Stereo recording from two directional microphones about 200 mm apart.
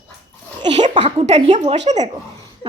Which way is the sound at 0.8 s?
35° right (ahead or behind).